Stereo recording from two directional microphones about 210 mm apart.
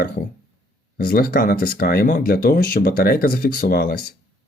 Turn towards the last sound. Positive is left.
turn(degrees=45)  # may be behind; listen again after turning